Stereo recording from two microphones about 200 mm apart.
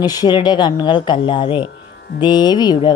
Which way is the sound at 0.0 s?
20° left (ahead or behind).